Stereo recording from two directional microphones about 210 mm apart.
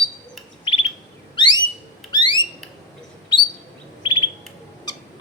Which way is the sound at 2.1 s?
20° left (ahead or behind).